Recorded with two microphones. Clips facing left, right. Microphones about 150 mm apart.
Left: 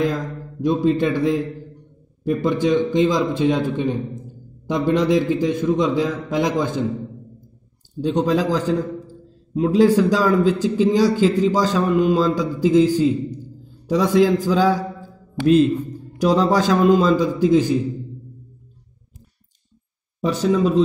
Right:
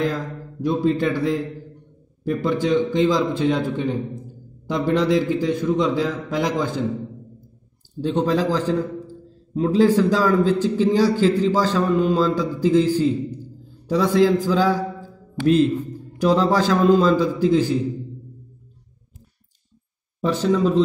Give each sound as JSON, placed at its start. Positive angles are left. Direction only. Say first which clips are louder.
{"t": 0.0, "sound": "a man's voice", "louder": "left 2 dB", "side_deg": 20}
{"t": 2.2, "sound": "a man's voice", "louder": "left 2 dB", "side_deg": 20}
{"t": 8.0, "sound": "a man's voice", "louder": "left 1 dB", "side_deg": 15}
{"t": 20.2, "sound": "a man's voice", "louder": "left 1 dB", "side_deg": 15}